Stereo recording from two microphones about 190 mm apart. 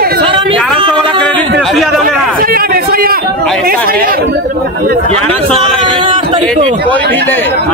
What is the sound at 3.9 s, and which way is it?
Speech, 50° right (ahead or behind).